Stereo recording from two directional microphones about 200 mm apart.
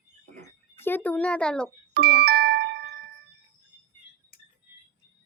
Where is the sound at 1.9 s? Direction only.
55° right (ahead or behind).